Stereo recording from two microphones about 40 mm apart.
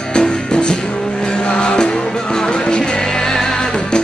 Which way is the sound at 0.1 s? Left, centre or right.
Left.